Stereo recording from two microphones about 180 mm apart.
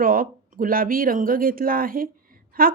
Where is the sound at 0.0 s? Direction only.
50° right (ahead or behind).